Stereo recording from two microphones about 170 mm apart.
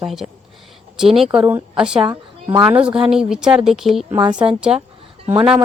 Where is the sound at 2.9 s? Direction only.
5° right (ahead or behind).